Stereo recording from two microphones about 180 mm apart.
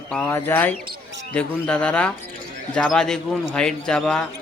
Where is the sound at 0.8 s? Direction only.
80° right.